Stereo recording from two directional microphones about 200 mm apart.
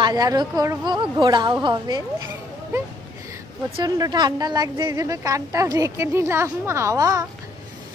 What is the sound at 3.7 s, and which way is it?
A woman's voice, 20° right (ahead or behind).